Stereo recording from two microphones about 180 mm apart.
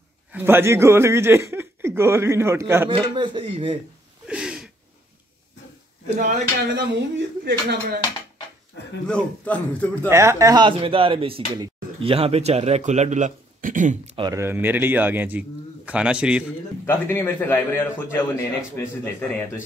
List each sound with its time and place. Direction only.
0.3 s speech: 10° right (ahead or behind)
2.9 s speech: 25° right (ahead or behind)
4.3 s a sound: 5° right (ahead or behind)
6.1 s speech: 40° right (ahead or behind)
6.7 s speech: 65° right (ahead or behind)
9.0 s a man's voice: 5° left (ahead or behind)
10.0 s speech: 15° right (ahead or behind); by 13.9 s 45° right (ahead or behind)
14.1 s speech: 25° right (ahead or behind)
14.4 s speech: 10° right (ahead or behind)
16.8 s a man's voice: 15° left (ahead or behind)